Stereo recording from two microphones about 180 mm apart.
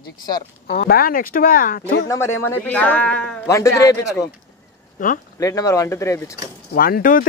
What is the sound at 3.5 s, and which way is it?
Speech, 15° left (ahead or behind).